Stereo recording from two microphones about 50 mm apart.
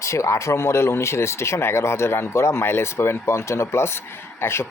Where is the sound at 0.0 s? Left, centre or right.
Left.